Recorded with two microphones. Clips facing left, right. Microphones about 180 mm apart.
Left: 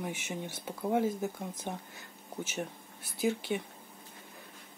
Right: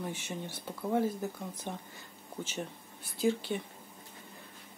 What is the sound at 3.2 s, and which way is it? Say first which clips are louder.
Speech: right 1 dB; 10° left (ahead or behind).